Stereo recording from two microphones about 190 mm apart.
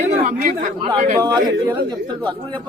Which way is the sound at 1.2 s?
20° right (ahead or behind).